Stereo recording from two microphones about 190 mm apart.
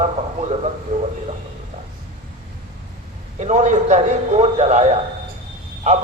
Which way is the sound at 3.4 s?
35° right (ahead or behind).